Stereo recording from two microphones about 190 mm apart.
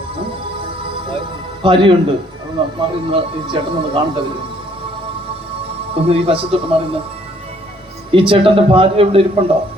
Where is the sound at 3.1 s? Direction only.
25° right (ahead or behind).